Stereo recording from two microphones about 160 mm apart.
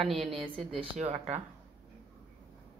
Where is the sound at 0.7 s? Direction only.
45° right (ahead or behind).